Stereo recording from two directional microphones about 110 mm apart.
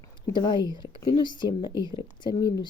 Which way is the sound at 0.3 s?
45° left (ahead or behind).